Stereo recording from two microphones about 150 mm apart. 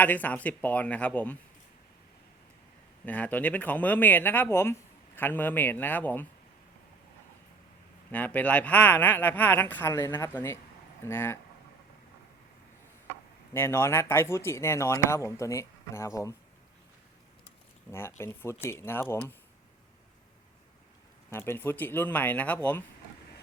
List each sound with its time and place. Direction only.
0.0 s speech: 10° left (ahead or behind)
3.1 s speech: 10° left (ahead or behind)
8.1 s speech: 10° left (ahead or behind)
13.5 s speech: 15° left (ahead or behind)
17.9 s speech: 15° left (ahead or behind)
21.2 s speech: 15° left (ahead or behind)